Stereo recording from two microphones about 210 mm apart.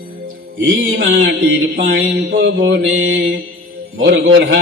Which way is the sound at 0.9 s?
55° right (ahead or behind).